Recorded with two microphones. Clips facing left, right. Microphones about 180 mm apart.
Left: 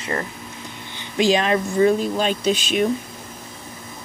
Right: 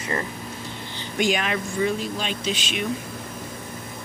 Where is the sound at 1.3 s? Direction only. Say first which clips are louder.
Left 6 dB; 35° left (ahead or behind).